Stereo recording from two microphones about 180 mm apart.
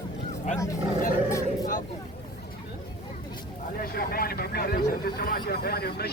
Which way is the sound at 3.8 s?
55° left (ahead or behind).